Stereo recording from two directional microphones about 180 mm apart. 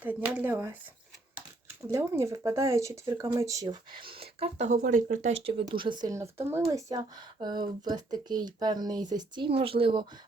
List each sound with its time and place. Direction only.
0.0 s speech: 10° right (ahead or behind)
1.9 s speech: 15° right (ahead or behind); by 5.3 s 40° right (ahead or behind)
5.5 s speech: 30° right (ahead or behind)